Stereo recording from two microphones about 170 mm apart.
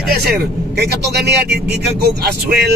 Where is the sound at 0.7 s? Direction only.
70° right (ahead or behind).